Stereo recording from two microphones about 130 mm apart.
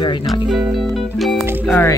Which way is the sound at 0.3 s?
Centre (ahead or behind).